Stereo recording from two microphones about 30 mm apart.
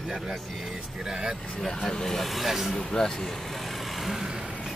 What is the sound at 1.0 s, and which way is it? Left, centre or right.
Speech, right.